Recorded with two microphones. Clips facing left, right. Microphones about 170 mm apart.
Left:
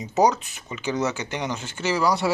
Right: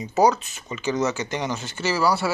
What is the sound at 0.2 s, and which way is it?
Speech, 15° left (ahead or behind).